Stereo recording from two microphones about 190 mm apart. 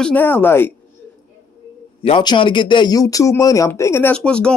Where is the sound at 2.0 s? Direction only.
25° left (ahead or behind).